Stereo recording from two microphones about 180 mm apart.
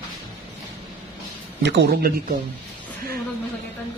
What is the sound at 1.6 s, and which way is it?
Speech, 70° right (ahead or behind).